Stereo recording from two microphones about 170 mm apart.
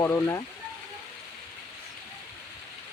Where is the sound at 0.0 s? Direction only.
15° left (ahead or behind).